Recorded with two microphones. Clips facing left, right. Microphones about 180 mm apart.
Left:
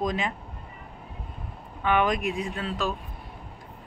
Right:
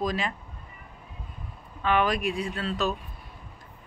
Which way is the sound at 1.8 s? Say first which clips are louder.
Left 1 dB; 20° left (ahead or behind).